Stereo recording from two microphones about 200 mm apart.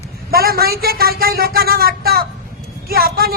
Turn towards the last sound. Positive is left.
turn(degrees=-50)  # may be behind; listen again after turning